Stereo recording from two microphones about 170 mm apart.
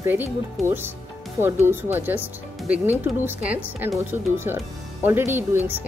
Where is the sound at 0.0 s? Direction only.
15° right (ahead or behind).